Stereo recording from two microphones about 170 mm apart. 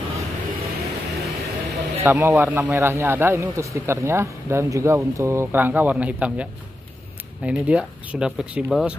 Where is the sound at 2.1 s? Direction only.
20° right (ahead or behind).